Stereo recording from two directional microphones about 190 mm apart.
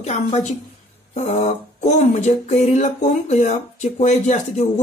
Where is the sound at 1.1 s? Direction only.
35° left (ahead or behind).